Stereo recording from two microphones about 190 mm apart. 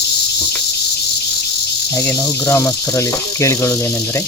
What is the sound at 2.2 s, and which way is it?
Insect, 15° left (ahead or behind).